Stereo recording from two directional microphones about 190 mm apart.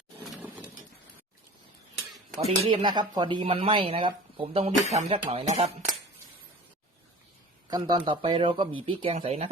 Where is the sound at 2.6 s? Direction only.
25° right (ahead or behind).